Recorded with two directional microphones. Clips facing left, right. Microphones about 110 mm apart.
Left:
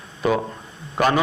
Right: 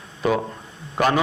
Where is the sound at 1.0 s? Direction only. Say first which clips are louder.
Left 1 dB; 25° left (ahead or behind).